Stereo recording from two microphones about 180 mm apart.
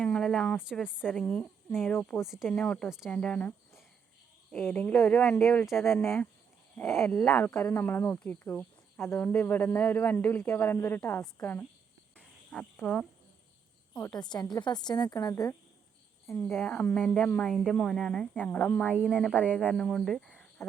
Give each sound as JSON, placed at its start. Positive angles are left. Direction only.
{"t": 0.0, "sound": "a sound", "side_deg": 5}
{"t": 0.6, "sound": "speech", "side_deg": -5}
{"t": 1.0, "sound": "speech", "side_deg": 10}
{"t": 2.2, "sound": "speech", "side_deg": -5}
{"t": 12.1, "sound": "cricket", "side_deg": 5}
{"t": 13.9, "sound": "a woman's voice", "side_deg": 5}
{"t": 14.2, "sound": "speech", "side_deg": 25}